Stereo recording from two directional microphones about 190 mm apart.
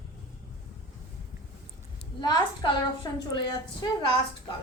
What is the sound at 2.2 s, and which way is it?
A woman's voice, 20° left (ahead or behind).